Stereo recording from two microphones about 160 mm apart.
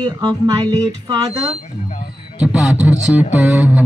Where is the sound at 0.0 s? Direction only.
20° right (ahead or behind).